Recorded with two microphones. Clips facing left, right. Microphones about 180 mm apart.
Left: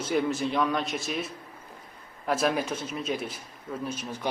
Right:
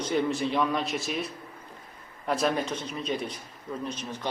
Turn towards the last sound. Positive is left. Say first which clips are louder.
# left 1 dB
turn(degrees=10)  # may be behind; listen again after turning